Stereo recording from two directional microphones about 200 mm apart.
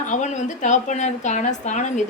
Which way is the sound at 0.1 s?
35° left (ahead or behind).